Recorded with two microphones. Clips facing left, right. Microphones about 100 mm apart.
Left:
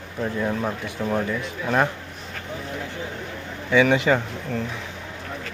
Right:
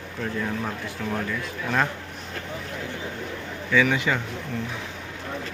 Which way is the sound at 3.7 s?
25° left (ahead or behind).